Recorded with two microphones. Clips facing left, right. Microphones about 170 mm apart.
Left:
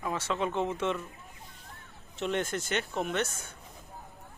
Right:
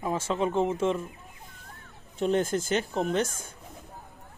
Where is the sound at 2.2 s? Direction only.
30° right (ahead or behind).